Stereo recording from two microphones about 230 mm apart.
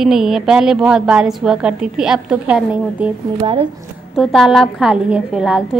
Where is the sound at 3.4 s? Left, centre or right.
Right.